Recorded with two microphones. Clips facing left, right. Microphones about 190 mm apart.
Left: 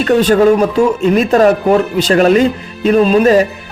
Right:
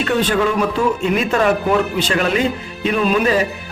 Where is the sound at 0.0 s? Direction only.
40° left (ahead or behind).